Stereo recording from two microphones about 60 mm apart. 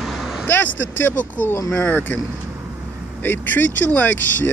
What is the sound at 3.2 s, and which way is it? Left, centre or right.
Speech, left.